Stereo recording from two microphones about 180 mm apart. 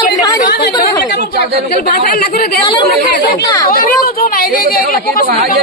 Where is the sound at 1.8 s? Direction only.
55° left (ahead or behind).